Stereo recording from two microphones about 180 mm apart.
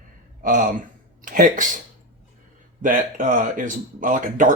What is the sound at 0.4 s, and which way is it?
Speech, 50° right (ahead or behind).